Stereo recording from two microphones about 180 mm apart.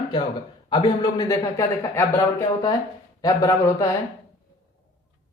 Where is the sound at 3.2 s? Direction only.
20° left (ahead or behind).